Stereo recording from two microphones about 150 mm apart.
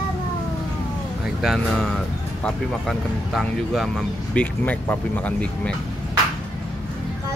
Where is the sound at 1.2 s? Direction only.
Centre (ahead or behind).